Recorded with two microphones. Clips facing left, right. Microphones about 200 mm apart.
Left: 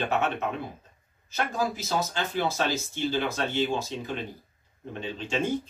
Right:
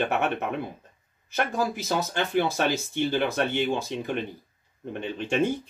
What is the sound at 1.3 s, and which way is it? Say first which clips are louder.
Speech: right 2 dB; 60° right (ahead or behind).